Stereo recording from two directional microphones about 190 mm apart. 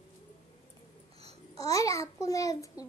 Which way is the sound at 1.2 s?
30° right (ahead or behind).